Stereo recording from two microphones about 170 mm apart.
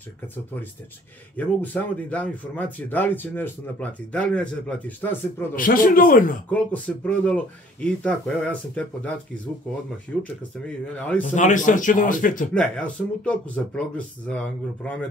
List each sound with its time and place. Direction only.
1.3 s speech: 10° left (ahead or behind)
5.6 s a man's voice: 55° left (ahead or behind)
6.5 s speech: 10° left (ahead or behind)
11.2 s speech: 45° left (ahead or behind)
12.5 s speech: 5° left (ahead or behind)